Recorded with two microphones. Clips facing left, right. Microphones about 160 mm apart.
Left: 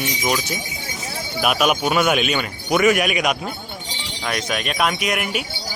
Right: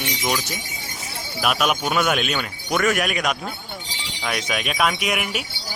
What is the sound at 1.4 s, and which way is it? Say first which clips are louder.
Speech: left 3 dB; 5° left (ahead or behind).